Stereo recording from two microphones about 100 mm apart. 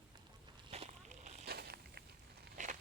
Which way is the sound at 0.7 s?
90° right.